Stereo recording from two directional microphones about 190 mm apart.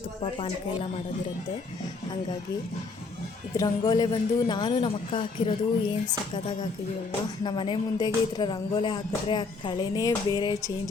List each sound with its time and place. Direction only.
0.2 s music: 30° left (ahead or behind)
3.6 s music: 20° left (ahead or behind)